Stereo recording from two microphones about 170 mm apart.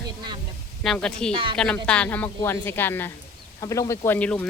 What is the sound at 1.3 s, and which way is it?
Speech, 30° right (ahead or behind).